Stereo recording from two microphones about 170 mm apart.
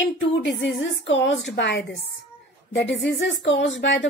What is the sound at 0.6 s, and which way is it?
Speech, 90° left.